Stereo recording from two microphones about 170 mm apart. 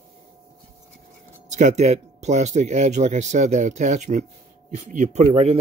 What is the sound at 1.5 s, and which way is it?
Speech, 45° right (ahead or behind).